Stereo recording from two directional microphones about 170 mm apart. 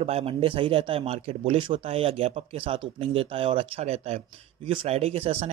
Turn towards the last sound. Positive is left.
turn(degrees=-35)  # may be behind; listen again after turning